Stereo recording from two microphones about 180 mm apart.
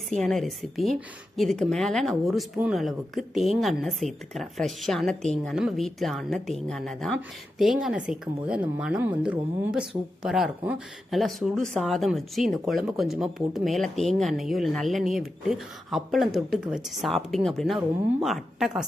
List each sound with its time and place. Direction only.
0.1 s speech: centre (ahead or behind)